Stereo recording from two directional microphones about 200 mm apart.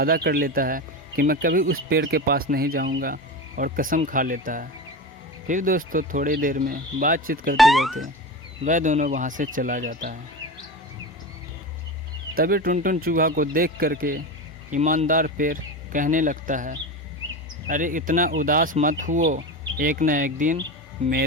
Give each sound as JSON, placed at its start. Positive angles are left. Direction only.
{"t": 0.0, "sound": "speech", "side_deg": -50}
{"t": 7.5, "sound": "speech", "side_deg": 0}
{"t": 8.6, "sound": "speech", "side_deg": -40}
{"t": 12.3, "sound": "speech", "side_deg": -50}